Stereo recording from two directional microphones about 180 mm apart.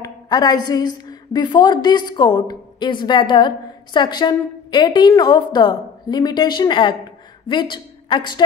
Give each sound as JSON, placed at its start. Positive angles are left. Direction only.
{"t": 0.0, "sound": "a woman's voice", "side_deg": 20}